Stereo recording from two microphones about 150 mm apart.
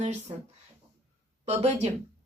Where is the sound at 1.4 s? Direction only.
45° right (ahead or behind).